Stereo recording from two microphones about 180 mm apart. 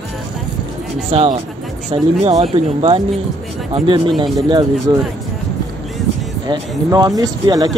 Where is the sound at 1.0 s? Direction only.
35° right (ahead or behind).